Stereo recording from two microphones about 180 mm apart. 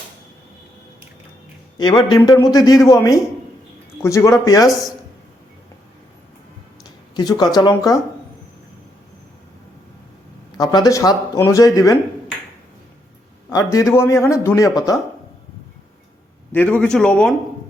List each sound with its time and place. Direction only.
2.1 s speech: 20° left (ahead or behind)
7.2 s speech: 20° left (ahead or behind)
10.6 s speech: 20° left (ahead or behind)
13.5 s a man's voice: 20° left (ahead or behind)
16.5 s a man's voice: 10° left (ahead or behind)